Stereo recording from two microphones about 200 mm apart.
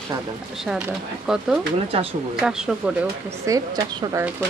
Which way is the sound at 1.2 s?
5° right (ahead or behind).